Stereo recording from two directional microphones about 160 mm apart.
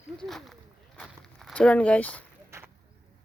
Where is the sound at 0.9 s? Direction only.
Centre (ahead or behind).